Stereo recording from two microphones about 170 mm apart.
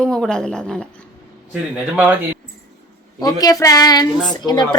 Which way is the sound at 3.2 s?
20° left (ahead or behind).